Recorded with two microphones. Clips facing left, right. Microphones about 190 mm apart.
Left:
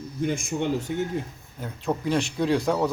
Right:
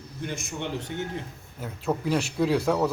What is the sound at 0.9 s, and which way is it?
Speech, 55° left (ahead or behind).